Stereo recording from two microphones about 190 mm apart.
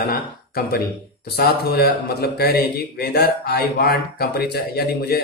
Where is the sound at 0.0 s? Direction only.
55° left (ahead or behind).